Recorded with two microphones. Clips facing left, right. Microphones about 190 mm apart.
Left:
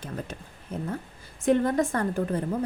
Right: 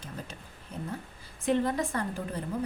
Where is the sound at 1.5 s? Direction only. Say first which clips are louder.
Left 5 dB; 50° left (ahead or behind).